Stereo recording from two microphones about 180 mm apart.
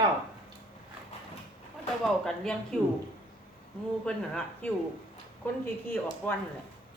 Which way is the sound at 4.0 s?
5° left (ahead or behind).